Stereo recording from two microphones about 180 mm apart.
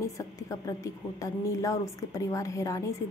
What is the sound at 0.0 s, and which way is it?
A woman's voice, 15° left (ahead or behind).